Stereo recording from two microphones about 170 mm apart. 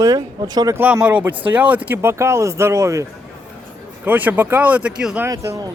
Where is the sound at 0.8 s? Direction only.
10° right (ahead or behind).